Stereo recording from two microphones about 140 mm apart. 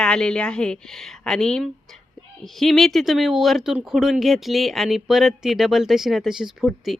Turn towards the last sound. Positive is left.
turn(degrees=0)  # may be behind; listen again after turning